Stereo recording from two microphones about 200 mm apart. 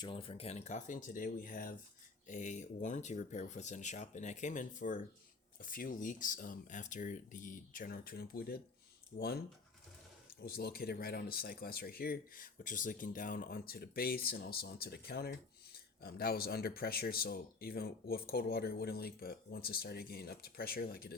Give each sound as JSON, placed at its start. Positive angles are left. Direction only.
{"t": 0.0, "sound": "speech", "side_deg": 25}
{"t": 10.4, "sound": "speech", "side_deg": 50}